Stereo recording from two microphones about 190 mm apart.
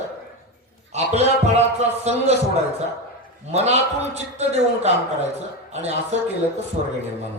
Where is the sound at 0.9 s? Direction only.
35° right (ahead or behind).